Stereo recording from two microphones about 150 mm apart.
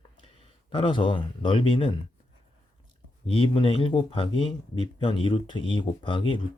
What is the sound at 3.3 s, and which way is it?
Speech, 35° left (ahead or behind).